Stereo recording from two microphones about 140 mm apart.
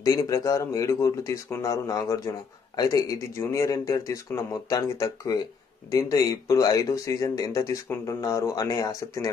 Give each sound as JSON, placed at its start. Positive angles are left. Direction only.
{"t": 0.0, "sound": "speech", "side_deg": 25}